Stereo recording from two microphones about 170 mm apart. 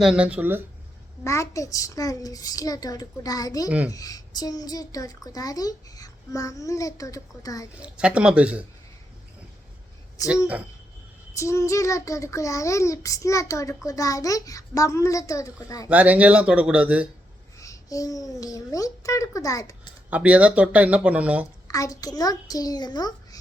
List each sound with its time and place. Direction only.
0.0 s speech: 5° right (ahead or behind)
1.2 s a child's voice: 15° left (ahead or behind)
7.8 s speech: 5° right (ahead or behind)
10.2 s speech: 5° right (ahead or behind)
11.3 s a child's voice: 15° left (ahead or behind)
15.9 s speech: 10° right (ahead or behind)
17.6 s a child's voice: 20° left (ahead or behind)
20.1 s speech: 10° right (ahead or behind)
21.7 s a child's voice: 20° left (ahead or behind)